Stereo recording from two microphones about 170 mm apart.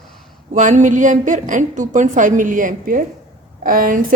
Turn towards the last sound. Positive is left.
turn(degrees=-55)  # may be behind; listen again after turning